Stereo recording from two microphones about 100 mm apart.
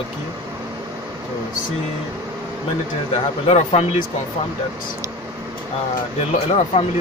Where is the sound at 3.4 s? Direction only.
90° left.